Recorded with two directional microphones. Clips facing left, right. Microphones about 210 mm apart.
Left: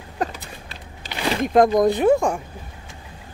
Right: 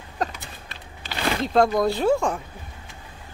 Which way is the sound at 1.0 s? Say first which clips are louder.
Left 2 dB; 15° left (ahead or behind).